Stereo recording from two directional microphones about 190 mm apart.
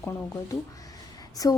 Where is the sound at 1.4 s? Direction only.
20° left (ahead or behind).